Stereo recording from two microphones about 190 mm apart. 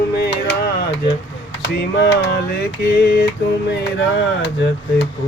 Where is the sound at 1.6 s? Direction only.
60° left (ahead or behind).